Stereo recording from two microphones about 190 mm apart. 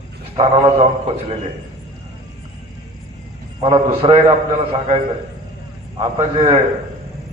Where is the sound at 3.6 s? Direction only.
30° right (ahead or behind).